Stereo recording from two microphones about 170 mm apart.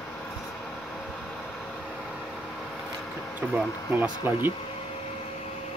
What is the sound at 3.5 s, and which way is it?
Speech, centre (ahead or behind).